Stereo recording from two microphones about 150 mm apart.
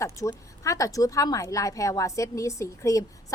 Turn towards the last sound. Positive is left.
turn(degrees=20)  # may be behind; listen again after turning